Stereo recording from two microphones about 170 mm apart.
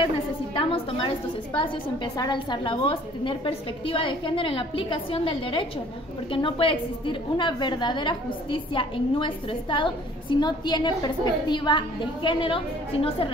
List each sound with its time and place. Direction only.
0.6 s a woman's voice: 30° left (ahead or behind)